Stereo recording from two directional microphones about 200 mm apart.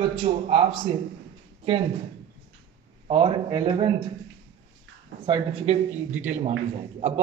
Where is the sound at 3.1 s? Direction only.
25° right (ahead or behind).